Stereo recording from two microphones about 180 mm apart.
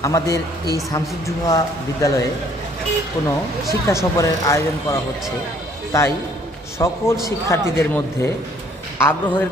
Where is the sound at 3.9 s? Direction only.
15° left (ahead or behind).